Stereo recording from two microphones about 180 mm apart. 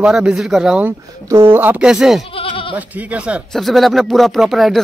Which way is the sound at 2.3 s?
30° left (ahead or behind).